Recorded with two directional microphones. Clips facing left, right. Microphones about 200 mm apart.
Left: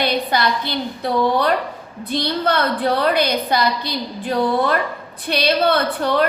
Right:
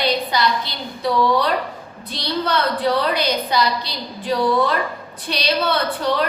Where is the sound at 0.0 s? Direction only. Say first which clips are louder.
Left 1 dB; 55° left (ahead or behind).